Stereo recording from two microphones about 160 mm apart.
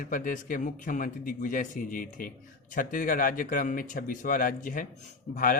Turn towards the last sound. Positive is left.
turn(degrees=60)  # may be behind; listen again after turning